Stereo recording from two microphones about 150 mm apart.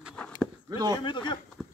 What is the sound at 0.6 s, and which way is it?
Speech, 25° right (ahead or behind).